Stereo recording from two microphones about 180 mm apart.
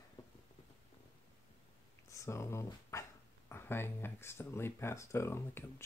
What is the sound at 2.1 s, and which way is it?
Speech, 15° left (ahead or behind).